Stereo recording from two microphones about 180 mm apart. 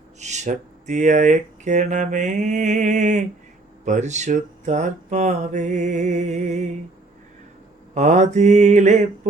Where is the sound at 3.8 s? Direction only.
40° right (ahead or behind).